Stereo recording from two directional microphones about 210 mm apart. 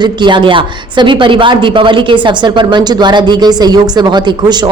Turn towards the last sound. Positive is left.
turn(degrees=-20)  # may be behind; listen again after turning